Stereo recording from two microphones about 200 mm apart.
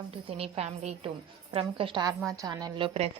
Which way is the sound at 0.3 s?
30° right (ahead or behind).